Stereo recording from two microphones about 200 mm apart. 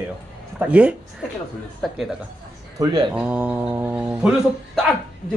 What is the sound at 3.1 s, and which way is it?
Speech, 5° right (ahead or behind).